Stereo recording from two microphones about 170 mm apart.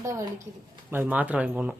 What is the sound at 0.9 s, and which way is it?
Speech, 10° right (ahead or behind).